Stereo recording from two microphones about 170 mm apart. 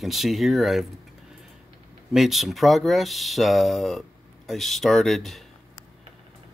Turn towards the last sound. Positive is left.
turn(degrees=0)  # may be behind; listen again after turning